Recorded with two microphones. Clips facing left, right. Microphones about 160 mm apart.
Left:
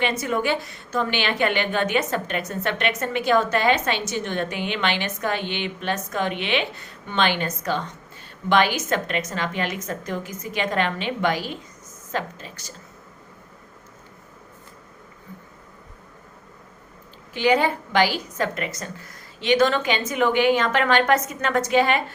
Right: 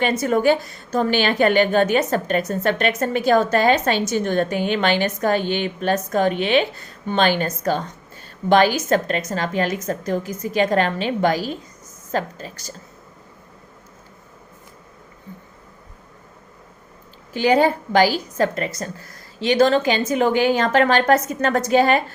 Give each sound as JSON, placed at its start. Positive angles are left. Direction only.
{"t": 0.0, "sound": "a woman's voice", "side_deg": -40}
{"t": 17.3, "sound": "a woman's voice", "side_deg": -40}